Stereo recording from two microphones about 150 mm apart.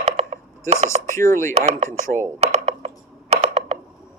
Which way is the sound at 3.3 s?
45° right (ahead or behind).